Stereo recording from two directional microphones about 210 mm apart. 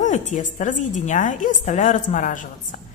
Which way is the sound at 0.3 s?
35° left (ahead or behind).